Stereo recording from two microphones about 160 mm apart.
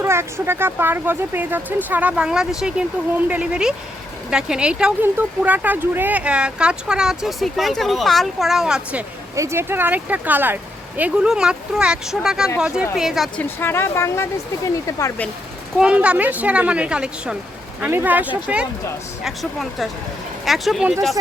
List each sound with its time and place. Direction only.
0.0 s speech: 15° right (ahead or behind)
9.3 s a woman's voice: 20° right (ahead or behind); by 15.1 s 20° left (ahead or behind)
15.8 s speech: 5° right (ahead or behind)